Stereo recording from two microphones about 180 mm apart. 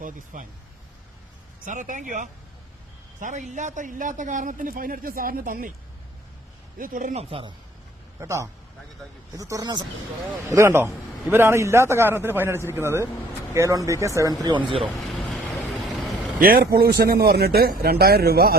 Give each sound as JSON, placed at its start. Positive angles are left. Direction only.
{"t": 0.3, "sound": "a man's voice", "side_deg": -45}
{"t": 1.6, "sound": "a man's voice", "side_deg": -45}
{"t": 6.7, "sound": "speech", "side_deg": -50}
{"t": 8.2, "sound": "a man's voice", "side_deg": -15}
{"t": 14.4, "sound": "speech", "side_deg": -30}
{"t": 14.9, "sound": "vehicle", "side_deg": 0}
{"t": 16.4, "sound": "a man's voice", "side_deg": -55}